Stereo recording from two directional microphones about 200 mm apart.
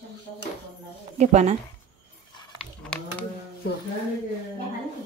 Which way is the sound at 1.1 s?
35° right (ahead or behind).